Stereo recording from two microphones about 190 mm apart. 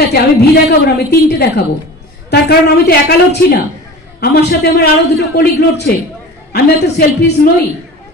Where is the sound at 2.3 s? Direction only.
60° left (ahead or behind).